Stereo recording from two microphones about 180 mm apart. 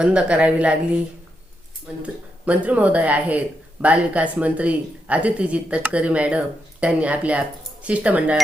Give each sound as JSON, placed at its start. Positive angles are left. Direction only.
{"t": 0.0, "sound": "a woman's voice", "side_deg": -5}
{"t": 2.5, "sound": "speech", "side_deg": -10}